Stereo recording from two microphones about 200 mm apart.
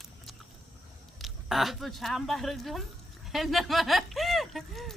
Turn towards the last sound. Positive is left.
turn(degrees=0)  # may be behind; listen again after turning